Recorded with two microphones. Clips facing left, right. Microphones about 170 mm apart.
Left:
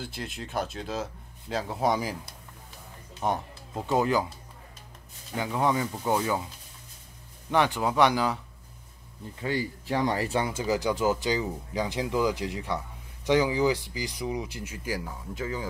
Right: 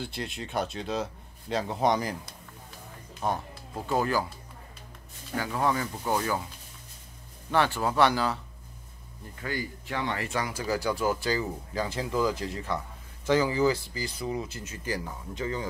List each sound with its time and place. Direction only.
0.0 s speech: centre (ahead or behind)
3.2 s speech: 20° left (ahead or behind)
5.3 s speech: 15° left (ahead or behind)
7.5 s speech: 15° left (ahead or behind)
9.4 s speech: 30° left (ahead or behind); by 15.6 s 5° left (ahead or behind)